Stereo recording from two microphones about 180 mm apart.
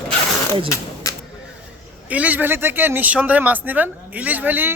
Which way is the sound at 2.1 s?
10° right (ahead or behind).